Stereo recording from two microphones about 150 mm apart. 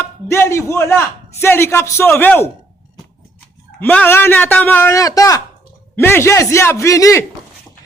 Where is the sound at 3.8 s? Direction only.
10° left (ahead or behind).